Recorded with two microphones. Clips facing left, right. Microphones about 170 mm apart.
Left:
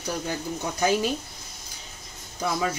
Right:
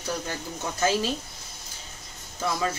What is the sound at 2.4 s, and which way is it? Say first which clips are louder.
Speech: left 1 dB; 15° left (ahead or behind).